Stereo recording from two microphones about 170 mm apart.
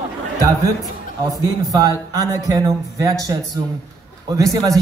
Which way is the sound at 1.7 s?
20° right (ahead or behind).